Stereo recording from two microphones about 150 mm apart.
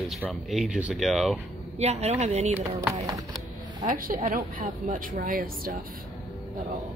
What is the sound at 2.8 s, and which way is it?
Speech, 20° right (ahead or behind).